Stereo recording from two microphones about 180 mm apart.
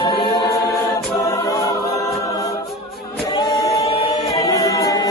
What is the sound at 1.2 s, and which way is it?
Choir, 20° left (ahead or behind).